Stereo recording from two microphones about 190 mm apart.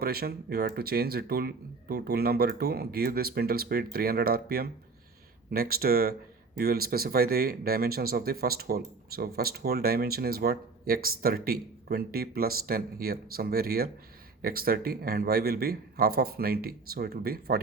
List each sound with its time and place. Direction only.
0.0 s speech: 55° right (ahead or behind)